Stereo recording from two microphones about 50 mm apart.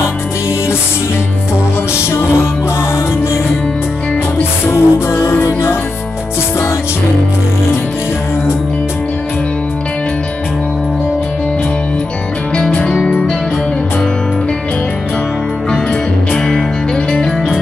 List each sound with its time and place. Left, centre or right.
4.4 s music: left
16.3 s music: centre